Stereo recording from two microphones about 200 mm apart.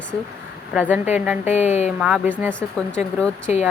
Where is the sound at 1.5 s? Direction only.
35° left (ahead or behind).